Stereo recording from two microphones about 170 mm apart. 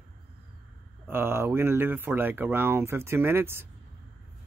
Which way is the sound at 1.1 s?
15° right (ahead or behind).